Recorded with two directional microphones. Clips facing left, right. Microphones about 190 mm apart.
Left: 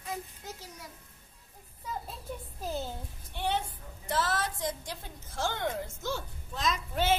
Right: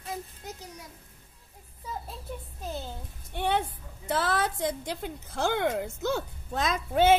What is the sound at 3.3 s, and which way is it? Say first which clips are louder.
A woman's voice: right 4 dB; 55° right (ahead or behind).